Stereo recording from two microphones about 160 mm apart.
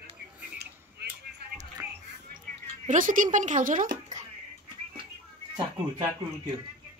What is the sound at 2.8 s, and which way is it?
Speech, 55° right (ahead or behind).